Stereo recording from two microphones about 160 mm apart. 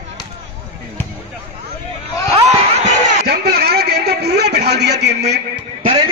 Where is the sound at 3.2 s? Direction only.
90° right.